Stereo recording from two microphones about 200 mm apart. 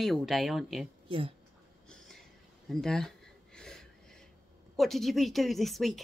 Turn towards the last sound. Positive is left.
turn(degrees=0)  # may be behind; listen again after turning